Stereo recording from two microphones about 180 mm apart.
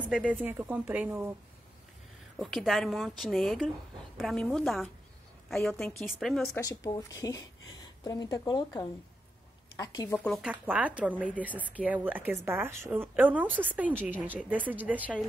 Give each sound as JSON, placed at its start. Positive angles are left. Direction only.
{"t": 0.1, "sound": "a woman's voice", "side_deg": -5}
{"t": 2.3, "sound": "a woman's voice", "side_deg": 0}
{"t": 6.5, "sound": "speech", "side_deg": 20}
{"t": 10.3, "sound": "a woman's voice", "side_deg": -5}